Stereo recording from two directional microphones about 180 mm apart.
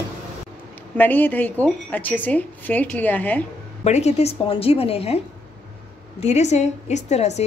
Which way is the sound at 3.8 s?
40° left (ahead or behind).